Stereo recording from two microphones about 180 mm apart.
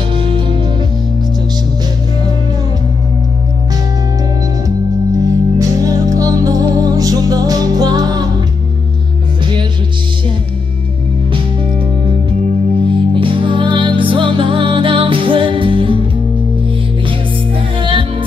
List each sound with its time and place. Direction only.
0.1 s music: 25° right (ahead or behind)
5.2 s music: 20° right (ahead or behind)
13.1 s music: 30° right (ahead or behind)
17.7 s music: 30° right (ahead or behind)